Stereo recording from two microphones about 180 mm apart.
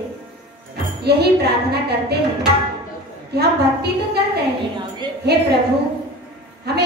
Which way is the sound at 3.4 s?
65° right (ahead or behind).